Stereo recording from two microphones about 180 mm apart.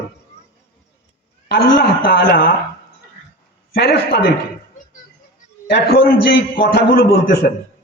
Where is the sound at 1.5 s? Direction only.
55° left (ahead or behind).